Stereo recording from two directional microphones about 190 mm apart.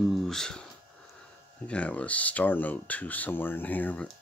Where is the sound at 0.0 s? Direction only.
Centre (ahead or behind).